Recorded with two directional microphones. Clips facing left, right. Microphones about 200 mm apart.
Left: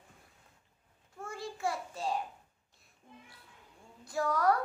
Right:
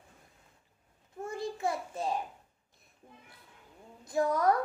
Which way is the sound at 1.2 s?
20° right (ahead or behind).